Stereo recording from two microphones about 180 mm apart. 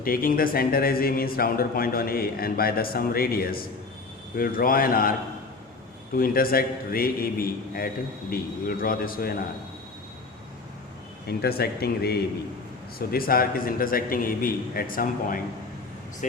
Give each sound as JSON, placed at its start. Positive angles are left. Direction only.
{"t": 0.0, "sound": "a man's voice", "side_deg": 50}
{"t": 6.1, "sound": "a man's voice", "side_deg": 55}
{"t": 11.3, "sound": "a man's voice", "side_deg": 60}